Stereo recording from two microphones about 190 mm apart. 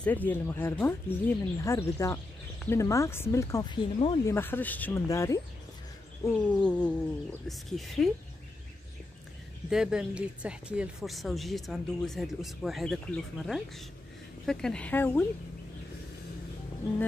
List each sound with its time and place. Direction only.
0.0 s speech: 10° left (ahead or behind); by 4.2 s 25° left (ahead or behind)
4.3 s speech: 10° left (ahead or behind)
6.2 s speech: 5° left (ahead or behind)
9.7 s speech: 5° right (ahead or behind)